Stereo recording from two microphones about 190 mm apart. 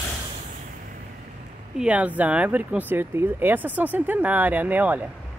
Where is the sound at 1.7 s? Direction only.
5° right (ahead or behind).